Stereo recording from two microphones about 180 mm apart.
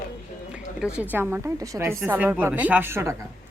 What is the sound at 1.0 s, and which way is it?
Speech, 10° right (ahead or behind).